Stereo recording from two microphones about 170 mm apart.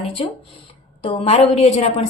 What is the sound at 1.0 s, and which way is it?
Speech, 35° left (ahead or behind).